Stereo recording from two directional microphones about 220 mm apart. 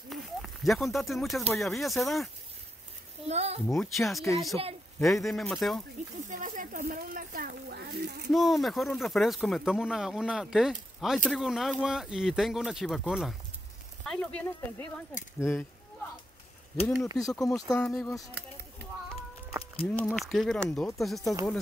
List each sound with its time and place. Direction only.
0.1 s a sound: centre (ahead or behind)
1.5 s speech: centre (ahead or behind)
3.3 s speech: 30° right (ahead or behind)
3.6 s speech: 5° left (ahead or behind)
6.2 s speech: 35° right (ahead or behind)
8.3 s speech: centre (ahead or behind)
16.8 s speech: centre (ahead or behind)
17.6 s speech: 15° left (ahead or behind)
19.9 s speech: 5° left (ahead or behind)